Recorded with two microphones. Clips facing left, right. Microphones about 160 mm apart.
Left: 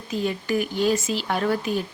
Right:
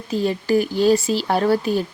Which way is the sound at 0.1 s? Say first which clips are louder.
Right 6 dB; 35° right (ahead or behind).